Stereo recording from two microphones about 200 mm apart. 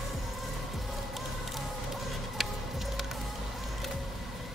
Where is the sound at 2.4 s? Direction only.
Centre (ahead or behind).